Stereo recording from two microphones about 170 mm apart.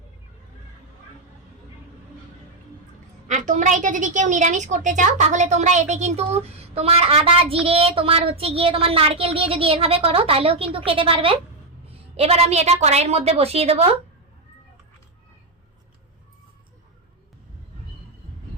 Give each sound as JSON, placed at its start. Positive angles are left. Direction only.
{"t": 3.2, "sound": "a woman's voice", "side_deg": -45}